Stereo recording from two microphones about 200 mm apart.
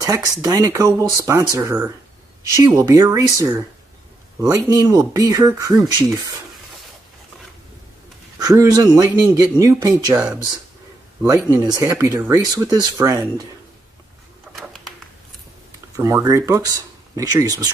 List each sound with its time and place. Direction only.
0.0 s speech: 15° right (ahead or behind)
8.4 s speech: 20° right (ahead or behind)
11.2 s speech: 20° right (ahead or behind)
14.5 s a sound: centre (ahead or behind)
16.0 s speech: 15° right (ahead or behind)